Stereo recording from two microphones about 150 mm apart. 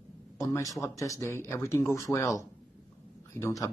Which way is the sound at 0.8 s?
20° left (ahead or behind).